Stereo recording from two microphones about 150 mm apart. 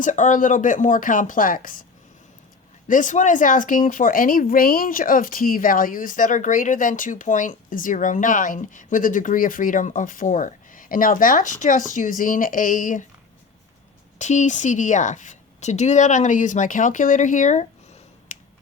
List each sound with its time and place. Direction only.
0.0 s speech: 55° left (ahead or behind)
2.8 s speech: 60° left (ahead or behind)
14.2 s a woman's voice: 50° left (ahead or behind)